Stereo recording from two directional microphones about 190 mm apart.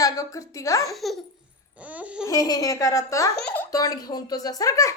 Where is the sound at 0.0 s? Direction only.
15° left (ahead or behind).